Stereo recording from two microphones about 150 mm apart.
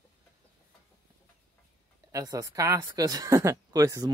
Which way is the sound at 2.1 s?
20° right (ahead or behind).